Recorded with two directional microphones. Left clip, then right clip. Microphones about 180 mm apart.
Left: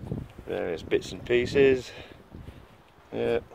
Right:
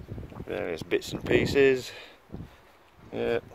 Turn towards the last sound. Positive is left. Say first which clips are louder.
# left 1 dB
turn(degrees=0)  # may be behind; listen again after turning